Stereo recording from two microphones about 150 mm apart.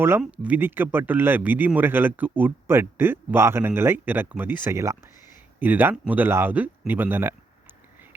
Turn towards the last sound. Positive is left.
turn(degrees=-15)  # may be behind; listen again after turning